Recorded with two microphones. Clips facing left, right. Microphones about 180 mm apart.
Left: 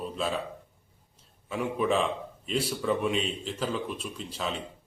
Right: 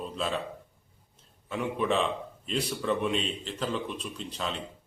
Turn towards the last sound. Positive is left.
turn(degrees=5)  # may be behind; listen again after turning